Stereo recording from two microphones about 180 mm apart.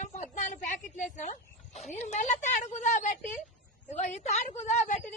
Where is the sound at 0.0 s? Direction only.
45° left (ahead or behind).